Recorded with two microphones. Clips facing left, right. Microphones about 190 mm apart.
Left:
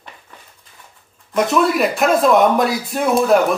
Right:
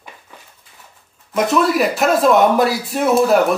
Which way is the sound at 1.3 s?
Centre (ahead or behind).